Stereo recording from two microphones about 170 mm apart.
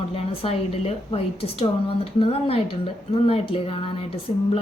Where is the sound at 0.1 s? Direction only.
35° left (ahead or behind).